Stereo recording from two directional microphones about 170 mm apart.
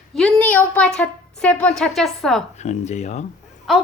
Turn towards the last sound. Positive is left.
turn(degrees=0)  # may be behind; listen again after turning